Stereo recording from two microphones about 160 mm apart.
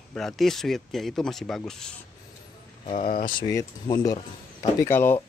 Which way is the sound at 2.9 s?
55° left (ahead or behind).